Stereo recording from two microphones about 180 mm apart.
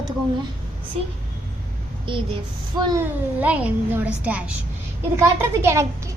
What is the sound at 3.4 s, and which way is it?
A woman's voice, 5° right (ahead or behind).